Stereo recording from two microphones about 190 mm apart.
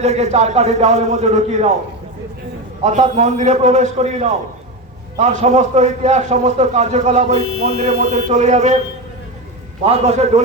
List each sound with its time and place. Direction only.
0.0 s a man's voice: 35° right (ahead or behind)
2.8 s a man's voice: 40° right (ahead or behind)
9.8 s a man's voice: 35° right (ahead or behind)